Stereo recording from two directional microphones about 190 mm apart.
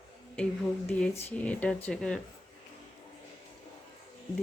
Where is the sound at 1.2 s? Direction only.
10° left (ahead or behind).